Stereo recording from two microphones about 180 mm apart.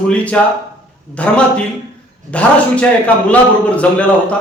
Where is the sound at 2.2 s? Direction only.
5° left (ahead or behind).